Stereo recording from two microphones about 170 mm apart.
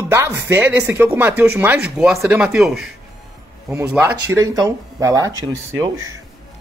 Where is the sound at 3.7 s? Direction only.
15° right (ahead or behind).